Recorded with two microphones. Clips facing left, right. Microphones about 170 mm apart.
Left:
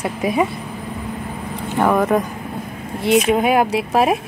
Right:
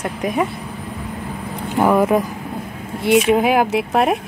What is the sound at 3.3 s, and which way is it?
Speech, centre (ahead or behind).